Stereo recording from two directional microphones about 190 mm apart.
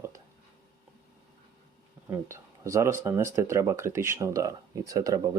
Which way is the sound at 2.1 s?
15° right (ahead or behind).